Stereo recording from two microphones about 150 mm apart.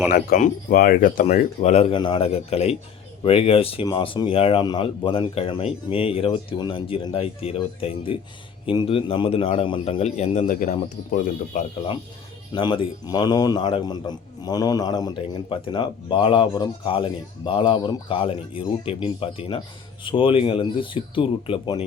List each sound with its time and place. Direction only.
0.1 s speech: 65° left (ahead or behind)
1.2 s speech: 50° left (ahead or behind)
1.9 s a man's voice: 30° left (ahead or behind); by 11.6 s 55° left (ahead or behind)
12.5 s a man's voice: 35° left (ahead or behind)